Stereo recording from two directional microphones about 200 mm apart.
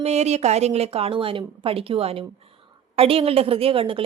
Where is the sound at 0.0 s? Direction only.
35° right (ahead or behind).